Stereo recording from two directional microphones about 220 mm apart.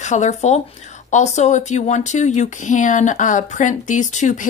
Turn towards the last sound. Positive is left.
turn(degrees=35)  # may be behind; listen again after turning